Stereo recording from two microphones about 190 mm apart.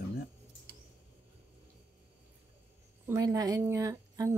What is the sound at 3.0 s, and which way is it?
Speech, 15° right (ahead or behind).